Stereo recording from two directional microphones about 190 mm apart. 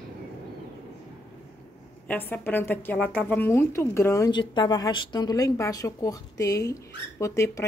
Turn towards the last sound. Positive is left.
turn(degrees=15)  # may be behind; listen again after turning